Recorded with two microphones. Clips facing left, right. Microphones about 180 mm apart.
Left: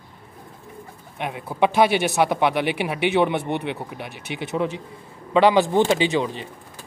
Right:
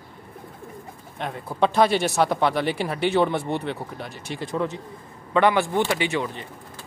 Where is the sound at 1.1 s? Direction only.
10° left (ahead or behind).